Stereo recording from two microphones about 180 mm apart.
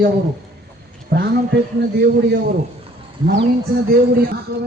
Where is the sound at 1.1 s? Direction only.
55° right (ahead or behind).